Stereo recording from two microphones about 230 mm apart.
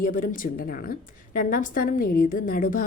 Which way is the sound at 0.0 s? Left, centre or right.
Left.